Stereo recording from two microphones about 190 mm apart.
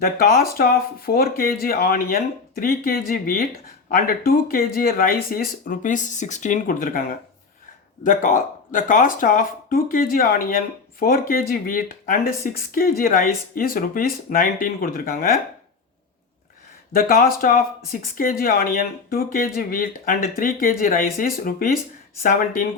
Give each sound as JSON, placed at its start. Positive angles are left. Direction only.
{"t": 0.0, "sound": "speech", "side_deg": 50}
{"t": 8.0, "sound": "speech", "side_deg": 45}
{"t": 16.9, "sound": "speech", "side_deg": 50}